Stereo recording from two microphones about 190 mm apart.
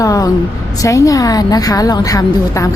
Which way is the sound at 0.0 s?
15° left (ahead or behind).